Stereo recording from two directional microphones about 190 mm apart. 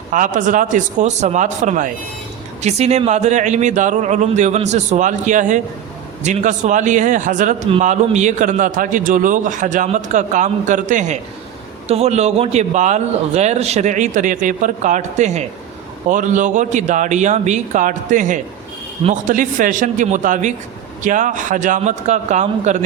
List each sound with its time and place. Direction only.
0.1 s a man's voice: 45° right (ahead or behind)